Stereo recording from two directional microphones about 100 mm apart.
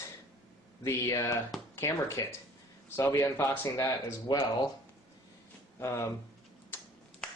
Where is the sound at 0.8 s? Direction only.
30° left (ahead or behind).